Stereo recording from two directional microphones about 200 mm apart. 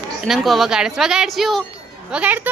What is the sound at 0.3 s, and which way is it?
A woman's voice, centre (ahead or behind).